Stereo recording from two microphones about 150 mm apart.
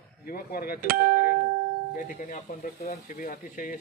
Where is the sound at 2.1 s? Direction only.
60° left (ahead or behind).